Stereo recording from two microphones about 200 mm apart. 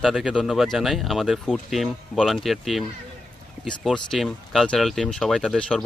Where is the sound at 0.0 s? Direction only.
Centre (ahead or behind).